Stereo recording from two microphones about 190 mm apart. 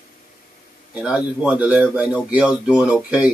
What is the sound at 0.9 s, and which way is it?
Speech, 5° right (ahead or behind).